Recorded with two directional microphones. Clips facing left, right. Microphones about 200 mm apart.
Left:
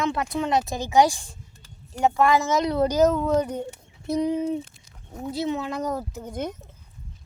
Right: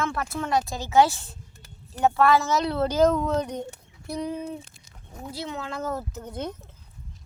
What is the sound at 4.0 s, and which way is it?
Speech, 20° left (ahead or behind).